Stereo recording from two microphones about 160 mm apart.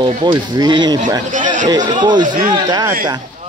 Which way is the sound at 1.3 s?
55° right (ahead or behind).